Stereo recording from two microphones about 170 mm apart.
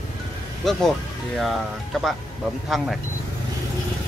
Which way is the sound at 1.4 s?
Centre (ahead or behind).